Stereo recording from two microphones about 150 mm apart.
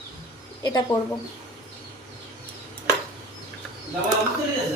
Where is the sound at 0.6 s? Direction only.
25° left (ahead or behind).